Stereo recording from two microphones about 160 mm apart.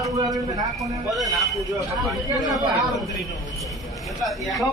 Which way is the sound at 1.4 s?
Centre (ahead or behind).